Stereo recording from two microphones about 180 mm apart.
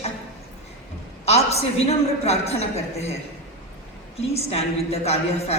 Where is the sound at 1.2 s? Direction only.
35° left (ahead or behind).